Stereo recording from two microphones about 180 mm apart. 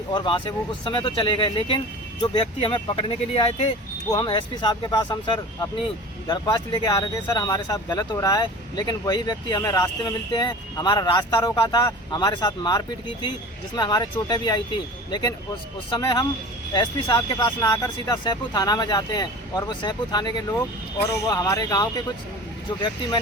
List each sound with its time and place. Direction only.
0.1 s speech: 25° left (ahead or behind)
15.9 s speech: 20° left (ahead or behind)